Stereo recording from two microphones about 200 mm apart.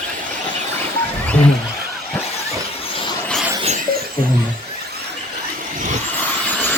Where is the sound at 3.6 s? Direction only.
35° right (ahead or behind).